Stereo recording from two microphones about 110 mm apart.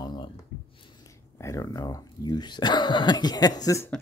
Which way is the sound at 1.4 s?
30° left (ahead or behind).